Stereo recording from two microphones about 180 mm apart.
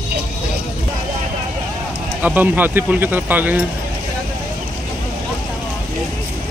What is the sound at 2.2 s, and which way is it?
Speech, 10° right (ahead or behind).